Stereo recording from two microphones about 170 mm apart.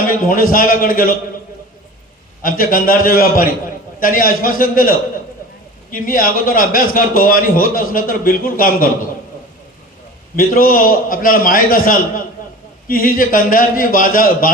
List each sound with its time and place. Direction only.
0.1 s a man's voice: 55° left (ahead or behind)
2.4 s a man's voice: 55° left (ahead or behind)
10.3 s a man's voice: 55° left (ahead or behind)